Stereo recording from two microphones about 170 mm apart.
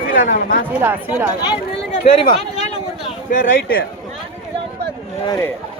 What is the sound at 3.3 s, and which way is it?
Speech, 60° left (ahead or behind).